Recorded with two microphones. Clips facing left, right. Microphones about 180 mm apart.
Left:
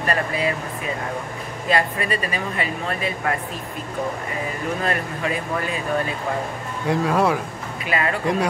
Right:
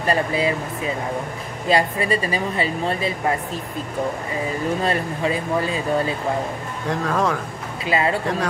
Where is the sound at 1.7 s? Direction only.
30° right (ahead or behind).